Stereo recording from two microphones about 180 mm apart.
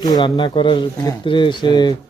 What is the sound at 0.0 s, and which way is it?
Speech, 25° left (ahead or behind).